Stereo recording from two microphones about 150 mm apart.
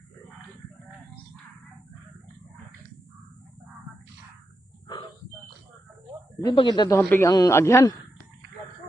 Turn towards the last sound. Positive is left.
turn(degrees=15)  # may be behind; listen again after turning